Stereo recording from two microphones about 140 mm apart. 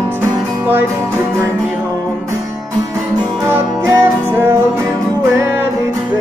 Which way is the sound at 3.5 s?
20° right (ahead or behind).